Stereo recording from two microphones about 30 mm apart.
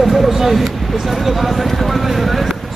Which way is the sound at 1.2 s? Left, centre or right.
Centre.